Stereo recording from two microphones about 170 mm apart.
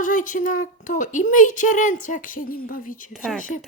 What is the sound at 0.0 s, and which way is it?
Hoot, 50° left (ahead or behind).